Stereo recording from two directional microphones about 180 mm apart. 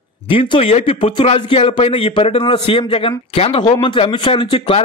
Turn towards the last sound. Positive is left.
turn(degrees=30)  # may be behind; listen again after turning